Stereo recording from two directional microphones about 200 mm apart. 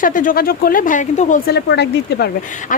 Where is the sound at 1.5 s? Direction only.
55° left (ahead or behind).